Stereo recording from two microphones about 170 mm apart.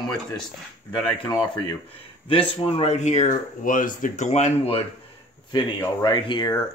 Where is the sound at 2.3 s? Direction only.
30° left (ahead or behind).